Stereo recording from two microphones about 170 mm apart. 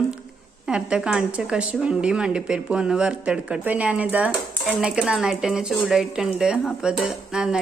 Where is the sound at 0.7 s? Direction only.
5° right (ahead or behind).